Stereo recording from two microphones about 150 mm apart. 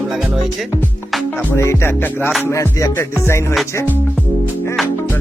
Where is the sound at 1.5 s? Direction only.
15° left (ahead or behind).